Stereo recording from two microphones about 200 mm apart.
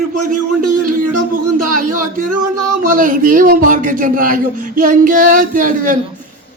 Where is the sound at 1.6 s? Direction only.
45° right (ahead or behind).